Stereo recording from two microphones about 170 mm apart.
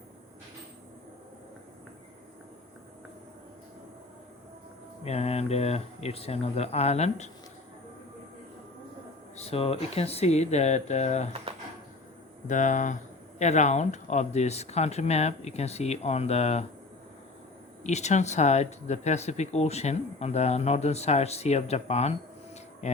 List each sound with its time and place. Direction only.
5.0 s speech: 35° left (ahead or behind)
9.3 s speech: 35° left (ahead or behind)
12.5 s speech: 45° left (ahead or behind)
17.8 s speech: 45° left (ahead or behind)